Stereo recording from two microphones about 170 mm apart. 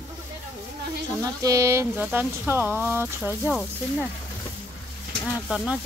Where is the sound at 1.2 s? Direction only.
20° right (ahead or behind).